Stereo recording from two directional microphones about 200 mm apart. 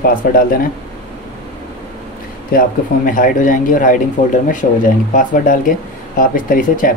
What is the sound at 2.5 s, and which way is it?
Speech, 45° left (ahead or behind).